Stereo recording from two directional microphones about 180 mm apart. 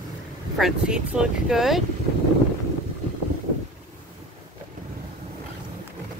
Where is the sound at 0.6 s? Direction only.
5° right (ahead or behind).